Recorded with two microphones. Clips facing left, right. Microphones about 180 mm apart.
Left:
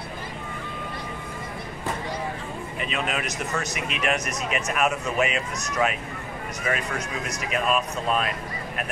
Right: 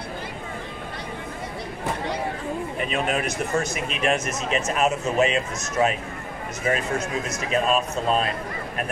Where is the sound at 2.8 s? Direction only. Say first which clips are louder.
Right 3 dB; 45° right (ahead or behind).